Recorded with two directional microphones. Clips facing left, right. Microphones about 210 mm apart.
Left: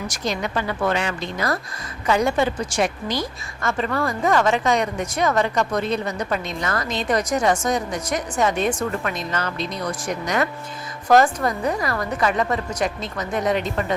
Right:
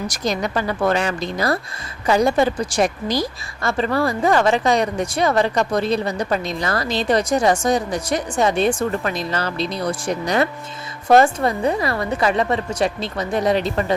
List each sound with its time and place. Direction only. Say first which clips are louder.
0.1 s a woman's voice: right 2 dB; 40° right (ahead or behind)